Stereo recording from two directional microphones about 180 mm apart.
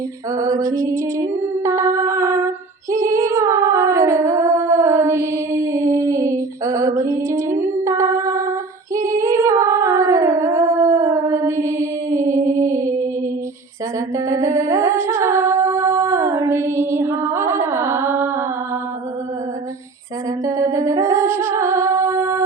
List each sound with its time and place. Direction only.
0.3 s female singing: 20° right (ahead or behind)
1.6 s a sound: 15° right (ahead or behind)
2.9 s humming: 15° right (ahead or behind)
14.3 s humming: 15° right (ahead or behind)
20.4 s music: 15° right (ahead or behind)